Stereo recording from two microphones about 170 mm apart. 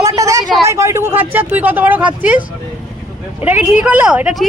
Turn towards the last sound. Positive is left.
turn(degrees=-5)  # may be behind; listen again after turning